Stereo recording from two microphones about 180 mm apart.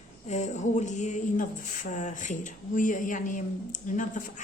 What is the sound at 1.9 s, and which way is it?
Speech, 40° left (ahead or behind).